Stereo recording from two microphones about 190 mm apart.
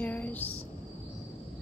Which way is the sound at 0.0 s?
10° left (ahead or behind).